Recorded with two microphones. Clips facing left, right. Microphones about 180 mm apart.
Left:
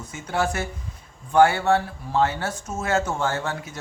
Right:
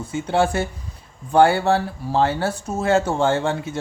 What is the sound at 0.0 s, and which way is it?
Speech, 30° right (ahead or behind).